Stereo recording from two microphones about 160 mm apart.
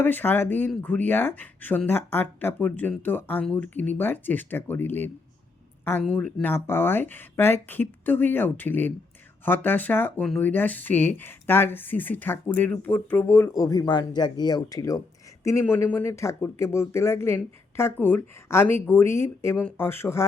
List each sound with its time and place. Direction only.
0.0 s speech: 10° left (ahead or behind)
6.1 s speech: 10° left (ahead or behind)